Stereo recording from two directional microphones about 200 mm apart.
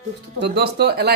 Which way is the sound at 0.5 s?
55° right (ahead or behind).